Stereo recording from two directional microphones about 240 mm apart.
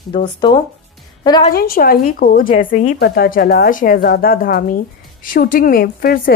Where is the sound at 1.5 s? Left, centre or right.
Left.